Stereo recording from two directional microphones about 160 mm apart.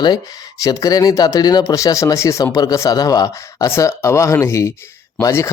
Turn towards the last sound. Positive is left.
turn(degrees=20)  # may be behind; listen again after turning